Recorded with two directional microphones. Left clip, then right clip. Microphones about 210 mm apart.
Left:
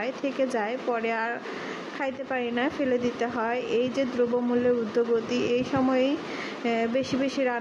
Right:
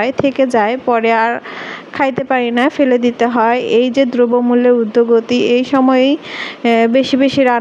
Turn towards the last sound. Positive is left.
turn(degrees=-40)  # may be behind; listen again after turning